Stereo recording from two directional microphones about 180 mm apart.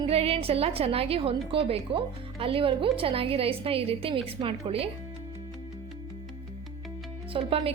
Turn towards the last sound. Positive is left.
turn(degrees=-30)  # may be behind; listen again after turning